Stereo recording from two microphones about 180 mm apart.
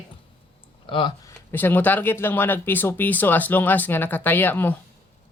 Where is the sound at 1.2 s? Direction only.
15° left (ahead or behind).